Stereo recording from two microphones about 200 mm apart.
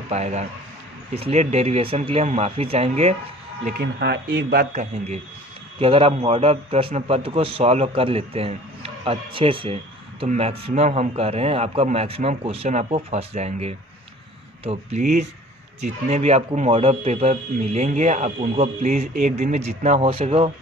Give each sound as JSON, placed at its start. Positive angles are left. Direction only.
{"t": 0.1, "sound": "speech", "side_deg": -35}
{"t": 3.6, "sound": "a man's voice", "side_deg": -50}